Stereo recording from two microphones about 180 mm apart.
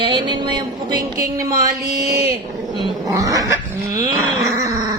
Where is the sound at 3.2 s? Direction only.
20° right (ahead or behind).